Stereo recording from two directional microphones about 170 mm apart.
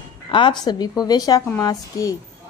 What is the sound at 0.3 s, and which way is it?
A woman's voice, 30° left (ahead or behind).